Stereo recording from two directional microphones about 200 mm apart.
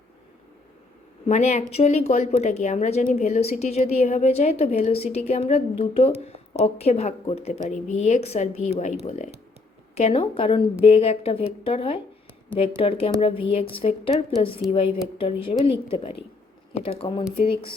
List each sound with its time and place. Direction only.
1.3 s a woman's voice: 35° left (ahead or behind)